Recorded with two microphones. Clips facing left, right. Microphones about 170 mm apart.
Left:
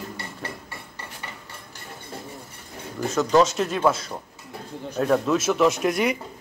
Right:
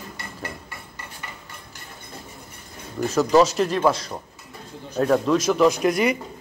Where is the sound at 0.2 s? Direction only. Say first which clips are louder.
Even; 30° left (ahead or behind).